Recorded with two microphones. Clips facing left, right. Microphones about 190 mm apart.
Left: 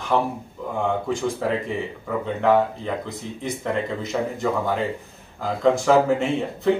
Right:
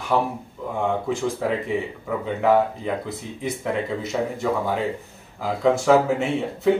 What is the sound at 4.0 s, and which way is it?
Speech, centre (ahead or behind).